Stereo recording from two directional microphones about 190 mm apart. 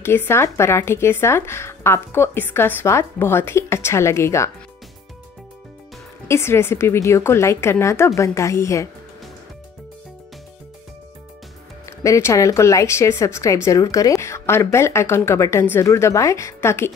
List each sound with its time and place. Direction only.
0.0 s speech: 15° left (ahead or behind)
6.2 s speech: 15° left (ahead or behind)
12.0 s speech: 15° left (ahead or behind)